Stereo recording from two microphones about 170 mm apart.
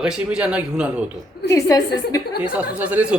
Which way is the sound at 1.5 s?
20° left (ahead or behind).